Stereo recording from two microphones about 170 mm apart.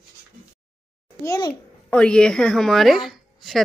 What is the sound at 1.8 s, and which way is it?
Speech, 5° left (ahead or behind).